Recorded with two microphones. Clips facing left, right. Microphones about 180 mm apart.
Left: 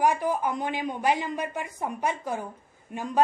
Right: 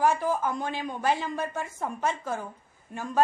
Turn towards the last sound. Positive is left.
turn(degrees=15)  # may be behind; listen again after turning